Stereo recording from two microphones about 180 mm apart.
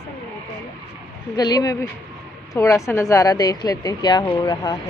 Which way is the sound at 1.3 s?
20° left (ahead or behind).